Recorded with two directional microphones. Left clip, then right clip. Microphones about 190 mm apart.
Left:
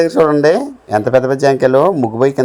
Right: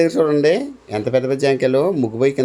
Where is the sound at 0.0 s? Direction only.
20° left (ahead or behind).